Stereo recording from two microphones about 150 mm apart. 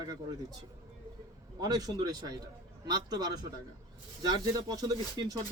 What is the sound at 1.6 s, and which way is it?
Speech, 25° right (ahead or behind).